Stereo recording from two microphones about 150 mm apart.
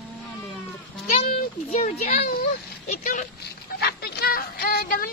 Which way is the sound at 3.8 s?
90° left.